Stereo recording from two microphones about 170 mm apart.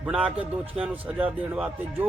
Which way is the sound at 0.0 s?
10° right (ahead or behind).